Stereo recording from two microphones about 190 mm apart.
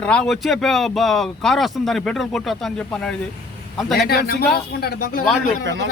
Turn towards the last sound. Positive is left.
turn(degrees=-70)  # may be behind; listen again after turning